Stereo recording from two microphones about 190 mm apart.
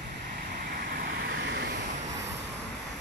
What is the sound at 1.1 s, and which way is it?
Vehicle, 65° right (ahead or behind).